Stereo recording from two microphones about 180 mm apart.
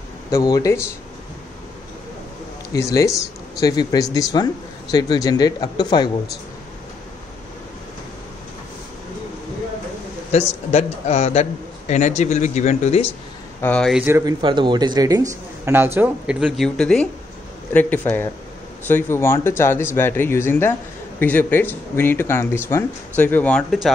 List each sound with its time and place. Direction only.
0.3 s speech: 20° left (ahead or behind)
2.7 s speech: 20° left (ahead or behind)
10.7 s speech: 35° left (ahead or behind)
13.6 s speech: 5° left (ahead or behind)
14.0 s speech: 15° right (ahead or behind)
14.4 s speech: 25° right (ahead or behind); by 23.9 s 5° left (ahead or behind)